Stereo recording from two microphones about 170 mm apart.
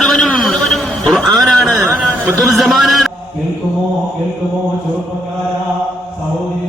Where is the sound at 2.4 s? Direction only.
Centre (ahead or behind).